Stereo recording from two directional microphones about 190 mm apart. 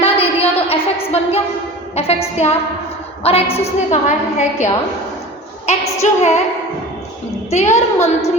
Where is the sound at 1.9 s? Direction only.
35° left (ahead or behind).